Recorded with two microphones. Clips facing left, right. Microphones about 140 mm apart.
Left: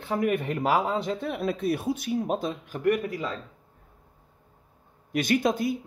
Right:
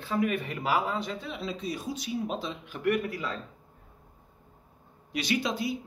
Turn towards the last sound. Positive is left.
turn(degrees=50)  # may be behind; listen again after turning